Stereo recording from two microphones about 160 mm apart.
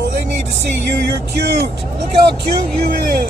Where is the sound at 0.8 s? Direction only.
90° right.